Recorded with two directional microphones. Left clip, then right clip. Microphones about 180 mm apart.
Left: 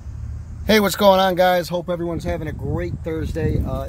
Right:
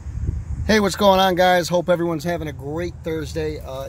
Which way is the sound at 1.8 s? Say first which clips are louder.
Right 5 dB; 55° right (ahead or behind).